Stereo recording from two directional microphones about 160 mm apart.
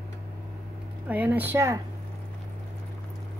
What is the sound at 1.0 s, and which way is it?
Speech, 10° right (ahead or behind).